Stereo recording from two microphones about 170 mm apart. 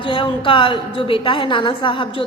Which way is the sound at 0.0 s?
30° left (ahead or behind).